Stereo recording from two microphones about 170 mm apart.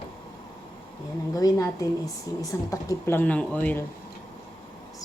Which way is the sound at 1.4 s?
20° left (ahead or behind).